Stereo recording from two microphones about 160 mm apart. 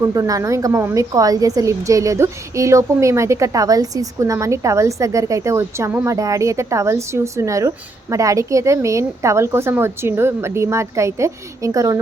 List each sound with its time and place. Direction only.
0.0 s a woman's voice: 20° right (ahead or behind)